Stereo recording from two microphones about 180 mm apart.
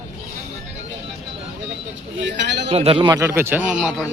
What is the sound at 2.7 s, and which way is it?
A man's voice, 35° right (ahead or behind).